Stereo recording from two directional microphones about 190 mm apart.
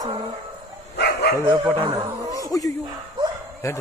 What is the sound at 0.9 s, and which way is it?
Speech, 60° left (ahead or behind).